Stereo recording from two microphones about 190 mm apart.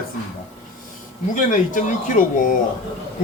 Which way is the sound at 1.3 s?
45° left (ahead or behind).